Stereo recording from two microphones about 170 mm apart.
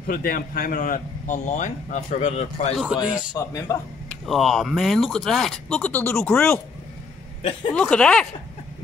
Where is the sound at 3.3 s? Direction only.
20° left (ahead or behind).